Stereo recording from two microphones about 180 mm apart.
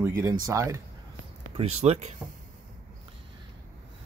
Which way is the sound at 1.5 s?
35° right (ahead or behind).